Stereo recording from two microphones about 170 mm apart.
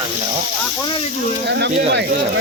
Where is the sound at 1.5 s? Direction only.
85° right.